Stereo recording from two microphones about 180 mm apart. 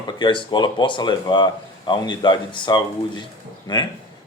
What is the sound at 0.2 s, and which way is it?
Speech, 25° left (ahead or behind).